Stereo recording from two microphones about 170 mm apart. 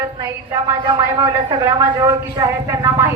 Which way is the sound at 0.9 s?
25° right (ahead or behind).